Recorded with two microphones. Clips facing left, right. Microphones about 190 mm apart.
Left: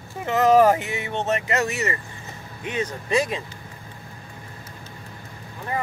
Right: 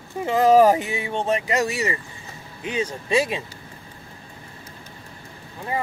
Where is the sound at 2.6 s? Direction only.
30° right (ahead or behind).